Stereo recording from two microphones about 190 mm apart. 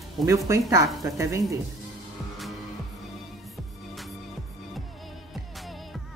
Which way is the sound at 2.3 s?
Centre (ahead or behind).